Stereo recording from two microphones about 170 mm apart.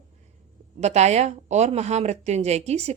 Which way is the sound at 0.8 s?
40° right (ahead or behind).